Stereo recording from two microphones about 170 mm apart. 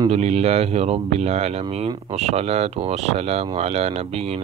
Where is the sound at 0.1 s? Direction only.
40° right (ahead or behind).